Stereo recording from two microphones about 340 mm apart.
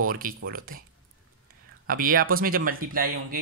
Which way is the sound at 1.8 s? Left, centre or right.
Right.